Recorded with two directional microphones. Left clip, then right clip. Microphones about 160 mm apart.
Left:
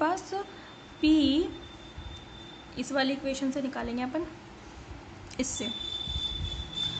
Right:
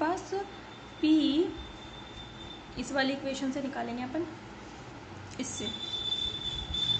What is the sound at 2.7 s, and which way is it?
A woman's voice, 25° left (ahead or behind).